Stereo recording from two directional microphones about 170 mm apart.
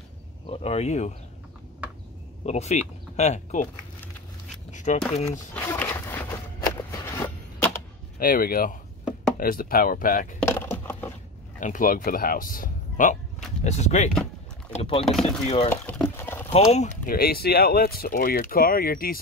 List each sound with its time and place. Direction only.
0.5 s speech: 35° left (ahead or behind)
1.8 s a sound: 10° right (ahead or behind)
2.4 s speech: 40° left (ahead or behind)
4.6 s speech: 45° left (ahead or behind)
5.5 s a sound: 10° left (ahead or behind)
8.2 s speech: 60° left (ahead or behind)
10.4 s a sound: 15° left (ahead or behind)
11.6 s speech: 50° left (ahead or behind); by 15.0 s 35° left (ahead or behind)
15.0 s speech: centre (ahead or behind)
15.4 s speech: 35° left (ahead or behind)
15.7 s liquid: 15° left (ahead or behind)
16.5 s speech: 40° left (ahead or behind); by 19.1 s 60° left (ahead or behind)